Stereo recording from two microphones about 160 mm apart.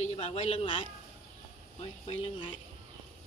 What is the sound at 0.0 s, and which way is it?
A woman's voice, 40° left (ahead or behind).